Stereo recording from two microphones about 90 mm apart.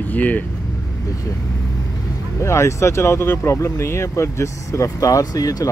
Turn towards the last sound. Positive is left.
turn(degrees=45)  # may be behind; listen again after turning